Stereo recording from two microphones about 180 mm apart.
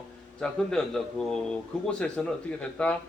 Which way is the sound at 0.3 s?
5° left (ahead or behind).